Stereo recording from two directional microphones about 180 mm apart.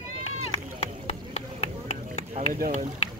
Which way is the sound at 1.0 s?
35° left (ahead or behind).